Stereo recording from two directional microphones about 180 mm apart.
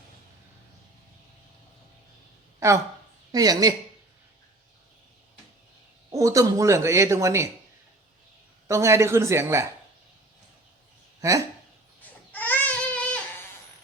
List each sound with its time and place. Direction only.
2.6 s a woman's voice: 15° right (ahead or behind)
6.1 s speech: 15° right (ahead or behind)
8.6 s speech: 15° right (ahead or behind)
11.2 s speech: 15° right (ahead or behind)
12.3 s baby cry: 10° left (ahead or behind)